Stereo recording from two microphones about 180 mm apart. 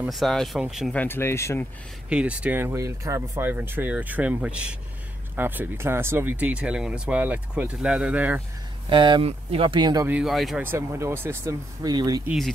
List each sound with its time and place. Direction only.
0.0 s speech: centre (ahead or behind)
1.0 s speech: 10° left (ahead or behind)
2.0 s speech: 5° right (ahead or behind)
8.8 s speech: 25° right (ahead or behind)
10.0 s speech: 5° right (ahead or behind)
10.6 s speech: 15° right (ahead or behind)